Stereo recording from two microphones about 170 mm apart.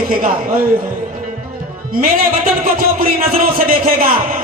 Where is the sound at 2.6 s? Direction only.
55° right (ahead or behind).